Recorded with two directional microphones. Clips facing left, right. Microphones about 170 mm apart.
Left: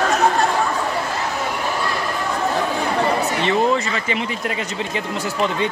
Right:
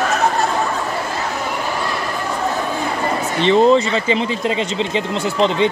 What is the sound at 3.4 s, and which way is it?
Speech, 30° right (ahead or behind).